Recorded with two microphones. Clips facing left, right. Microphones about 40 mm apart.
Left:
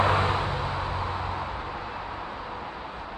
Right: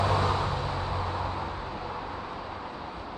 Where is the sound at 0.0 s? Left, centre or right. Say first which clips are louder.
Left 3 dB; left.